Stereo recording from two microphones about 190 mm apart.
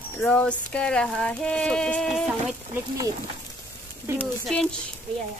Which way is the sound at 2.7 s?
20° right (ahead or behind).